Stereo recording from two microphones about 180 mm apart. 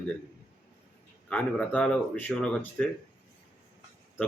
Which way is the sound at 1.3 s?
5° left (ahead or behind).